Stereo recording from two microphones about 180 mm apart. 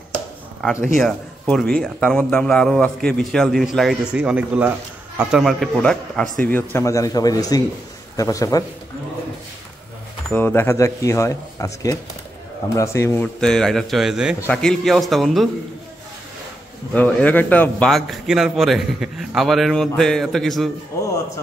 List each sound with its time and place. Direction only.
0.9 s a man's voice: centre (ahead or behind); by 8.6 s 20° left (ahead or behind)
10.3 s speech: 10° left (ahead or behind)
13.4 s a man's voice: 5° left (ahead or behind)
16.9 s a man's voice: 10° left (ahead or behind)